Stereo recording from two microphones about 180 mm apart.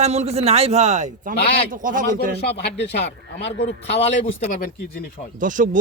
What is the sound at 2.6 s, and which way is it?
Speech, 75° left (ahead or behind).